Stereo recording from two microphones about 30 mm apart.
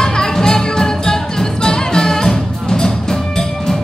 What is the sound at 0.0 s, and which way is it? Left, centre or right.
Music, left.